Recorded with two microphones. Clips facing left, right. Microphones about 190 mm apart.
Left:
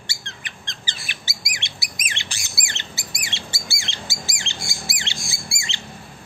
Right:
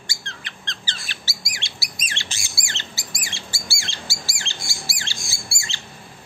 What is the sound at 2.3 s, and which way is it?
Squawk, 15° left (ahead or behind).